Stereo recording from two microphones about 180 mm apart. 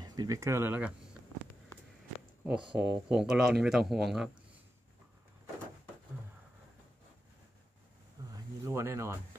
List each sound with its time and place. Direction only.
0.0 s speech: 20° right (ahead or behind)
2.4 s speech: 5° right (ahead or behind)
8.2 s a sound: 20° right (ahead or behind)
8.6 s speech: 15° right (ahead or behind)